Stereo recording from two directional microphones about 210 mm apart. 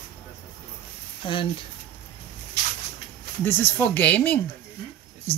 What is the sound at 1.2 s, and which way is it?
Speech, 25° left (ahead or behind).